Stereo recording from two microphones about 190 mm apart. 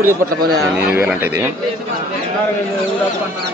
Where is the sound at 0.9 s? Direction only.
10° right (ahead or behind).